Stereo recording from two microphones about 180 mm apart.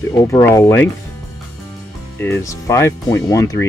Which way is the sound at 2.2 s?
15° left (ahead or behind).